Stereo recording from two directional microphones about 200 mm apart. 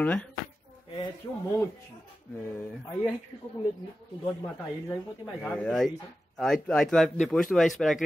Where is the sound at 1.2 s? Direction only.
20° left (ahead or behind).